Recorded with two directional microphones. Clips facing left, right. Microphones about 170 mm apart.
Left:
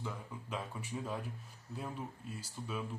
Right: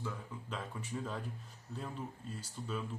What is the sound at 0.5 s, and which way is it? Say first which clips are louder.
Speech: even; 10° left (ahead or behind).